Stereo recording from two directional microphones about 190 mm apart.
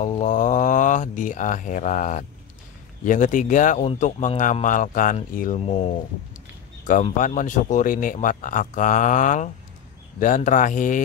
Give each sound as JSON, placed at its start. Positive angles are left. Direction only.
{"t": 0.0, "sound": "a man's voice", "side_deg": 40}
{"t": 5.6, "sound": "a man's voice", "side_deg": 30}
{"t": 6.9, "sound": "speech", "side_deg": 45}